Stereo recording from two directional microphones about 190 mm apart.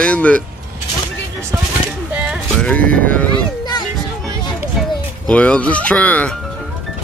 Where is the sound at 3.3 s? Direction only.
20° left (ahead or behind).